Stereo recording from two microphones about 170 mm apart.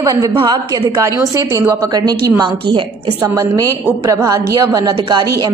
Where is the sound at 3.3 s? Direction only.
15° right (ahead or behind).